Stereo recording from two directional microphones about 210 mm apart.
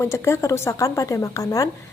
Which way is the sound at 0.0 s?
15° left (ahead or behind).